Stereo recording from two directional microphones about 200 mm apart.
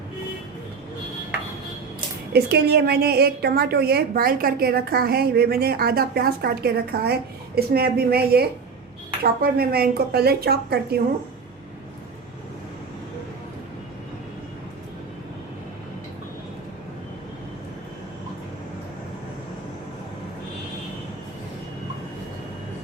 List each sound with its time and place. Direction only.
2.3 s a woman's voice: 55° right (ahead or behind)